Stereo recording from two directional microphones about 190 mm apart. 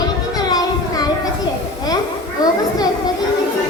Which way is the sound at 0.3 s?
20° left (ahead or behind).